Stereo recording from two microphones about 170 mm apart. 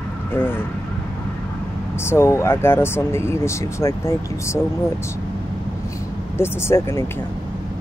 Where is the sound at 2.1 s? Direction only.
15° left (ahead or behind).